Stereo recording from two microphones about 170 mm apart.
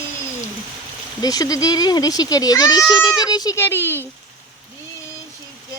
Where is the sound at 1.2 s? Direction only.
20° left (ahead or behind).